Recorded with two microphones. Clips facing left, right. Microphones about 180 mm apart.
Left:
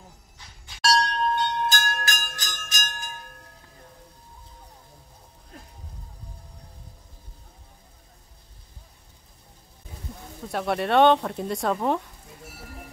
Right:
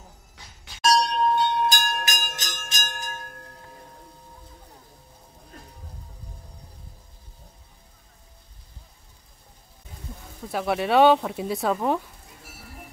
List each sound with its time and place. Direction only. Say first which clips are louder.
0.8 s bell: right 2 dB; 10° right (ahead or behind)
10.5 s speech: right 1 dB; centre (ahead or behind)